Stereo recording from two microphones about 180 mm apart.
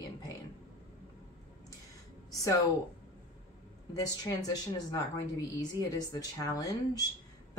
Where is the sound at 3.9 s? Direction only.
20° left (ahead or behind).